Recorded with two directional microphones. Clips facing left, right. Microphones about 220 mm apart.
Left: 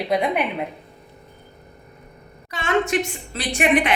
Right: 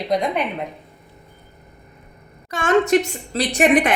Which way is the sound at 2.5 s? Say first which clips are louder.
Right 5 dB; 45° right (ahead or behind).